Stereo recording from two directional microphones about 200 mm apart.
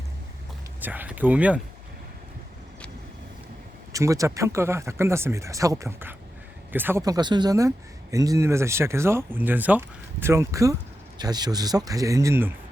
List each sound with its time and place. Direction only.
0.8 s speech: 10° right (ahead or behind)
3.9 s speech: 15° right (ahead or behind)